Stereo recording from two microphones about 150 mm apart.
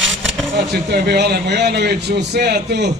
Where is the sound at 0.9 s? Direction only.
90° right.